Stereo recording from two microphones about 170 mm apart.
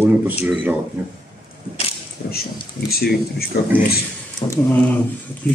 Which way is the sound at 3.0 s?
65° left (ahead or behind).